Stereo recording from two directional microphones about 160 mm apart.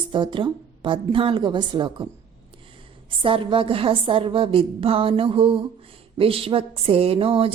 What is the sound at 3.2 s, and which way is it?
A woman's voice, 30° right (ahead or behind).